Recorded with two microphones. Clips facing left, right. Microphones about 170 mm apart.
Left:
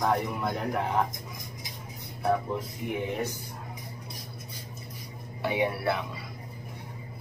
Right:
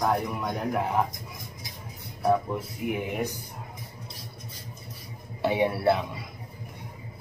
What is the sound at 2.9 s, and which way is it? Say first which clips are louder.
Speech: right 1 dB; 10° right (ahead or behind).